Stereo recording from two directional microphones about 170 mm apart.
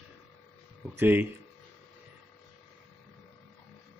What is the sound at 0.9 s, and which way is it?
Speech, 10° right (ahead or behind).